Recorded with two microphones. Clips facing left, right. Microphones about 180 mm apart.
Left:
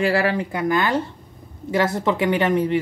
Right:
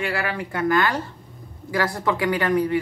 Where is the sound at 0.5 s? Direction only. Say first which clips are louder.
Right 3 dB; 20° left (ahead or behind).